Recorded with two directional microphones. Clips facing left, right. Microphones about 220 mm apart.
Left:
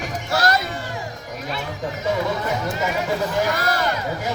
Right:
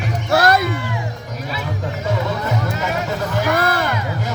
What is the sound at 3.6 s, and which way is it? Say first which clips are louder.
Music: right 4 dB; 55° right (ahead or behind).